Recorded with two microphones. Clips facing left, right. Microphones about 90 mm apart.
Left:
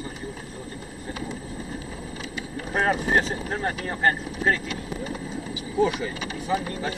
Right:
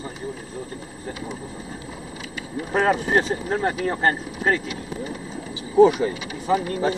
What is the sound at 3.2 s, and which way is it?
Speech, 25° right (ahead or behind).